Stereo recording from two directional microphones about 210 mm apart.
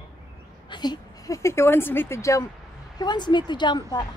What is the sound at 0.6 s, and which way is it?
A woman's voice, 20° left (ahead or behind).